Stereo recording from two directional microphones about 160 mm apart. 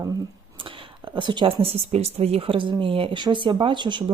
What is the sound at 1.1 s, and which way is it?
Speech, 30° right (ahead or behind).